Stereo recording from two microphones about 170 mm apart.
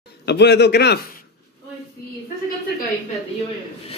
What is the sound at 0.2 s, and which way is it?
Speech, 80° left.